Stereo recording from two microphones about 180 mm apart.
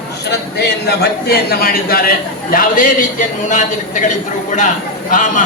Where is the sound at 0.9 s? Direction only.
60° left (ahead or behind); by 3.7 s 45° left (ahead or behind).